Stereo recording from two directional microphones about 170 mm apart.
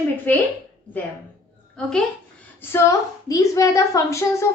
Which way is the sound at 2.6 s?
15° left (ahead or behind).